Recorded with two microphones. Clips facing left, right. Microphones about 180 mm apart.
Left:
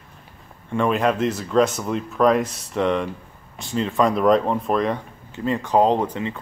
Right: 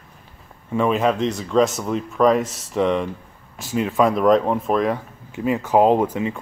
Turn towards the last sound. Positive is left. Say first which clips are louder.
# right 3 dB
turn(degrees=-10)  # may be behind; listen again after turning